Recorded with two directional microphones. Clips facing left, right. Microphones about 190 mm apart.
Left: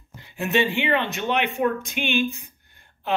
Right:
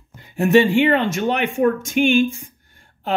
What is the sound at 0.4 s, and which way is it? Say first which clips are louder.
Speech: right 9 dB; 40° right (ahead or behind).